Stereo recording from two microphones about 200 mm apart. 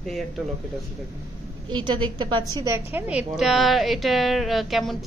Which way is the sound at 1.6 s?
20° right (ahead or behind).